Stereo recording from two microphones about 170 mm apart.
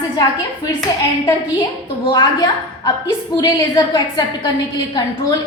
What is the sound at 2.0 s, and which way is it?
A woman's voice, 25° left (ahead or behind).